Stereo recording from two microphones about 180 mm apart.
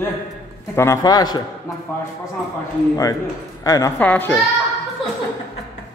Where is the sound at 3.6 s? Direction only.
20° left (ahead or behind).